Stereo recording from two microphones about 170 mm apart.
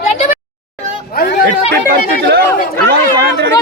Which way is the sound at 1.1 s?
70° left (ahead or behind).